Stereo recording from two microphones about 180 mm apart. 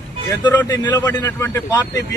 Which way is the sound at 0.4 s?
20° left (ahead or behind).